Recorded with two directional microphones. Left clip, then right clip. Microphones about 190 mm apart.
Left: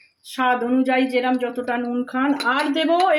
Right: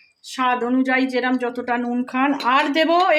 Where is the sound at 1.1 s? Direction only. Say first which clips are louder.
Even; 25° right (ahead or behind).